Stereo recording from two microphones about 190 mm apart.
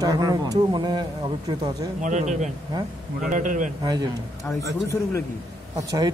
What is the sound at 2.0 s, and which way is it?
A man's voice, 40° right (ahead or behind).